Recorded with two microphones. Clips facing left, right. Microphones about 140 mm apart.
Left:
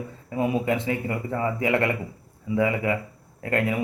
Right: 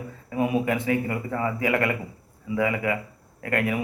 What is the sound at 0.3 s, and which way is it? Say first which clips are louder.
Speech: even; 25° left (ahead or behind).